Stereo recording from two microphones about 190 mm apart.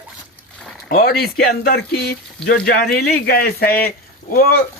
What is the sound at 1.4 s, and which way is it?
Speech, 50° left (ahead or behind).